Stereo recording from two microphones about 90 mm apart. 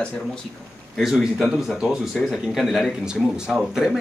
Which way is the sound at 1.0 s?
5° right (ahead or behind).